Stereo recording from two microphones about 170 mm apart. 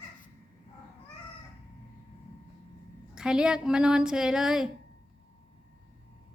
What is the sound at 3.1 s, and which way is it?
Speech, 5° right (ahead or behind).